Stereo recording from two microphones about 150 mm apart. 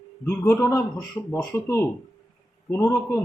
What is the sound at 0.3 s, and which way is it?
A man's voice, 15° left (ahead or behind).